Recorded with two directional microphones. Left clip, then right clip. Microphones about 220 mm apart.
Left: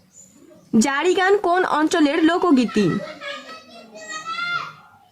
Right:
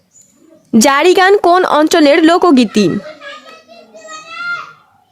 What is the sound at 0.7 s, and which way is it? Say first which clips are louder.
Speech: right 10 dB; 35° right (ahead or behind).